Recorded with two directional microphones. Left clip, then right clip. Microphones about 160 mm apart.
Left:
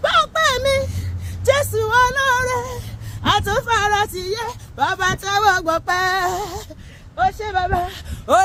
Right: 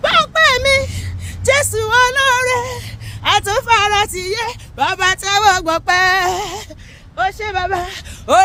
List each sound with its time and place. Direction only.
0.0 s a sound: 20° right (ahead or behind)
1.5 s female singing: 25° right (ahead or behind)
3.2 s speech: 25° right (ahead or behind)